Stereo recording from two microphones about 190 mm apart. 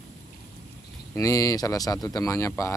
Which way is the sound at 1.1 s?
20° left (ahead or behind).